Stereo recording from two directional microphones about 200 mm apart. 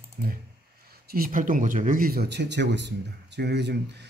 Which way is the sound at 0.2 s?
50° right (ahead or behind).